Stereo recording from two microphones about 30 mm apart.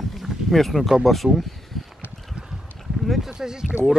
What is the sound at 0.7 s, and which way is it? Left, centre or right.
Speech, centre.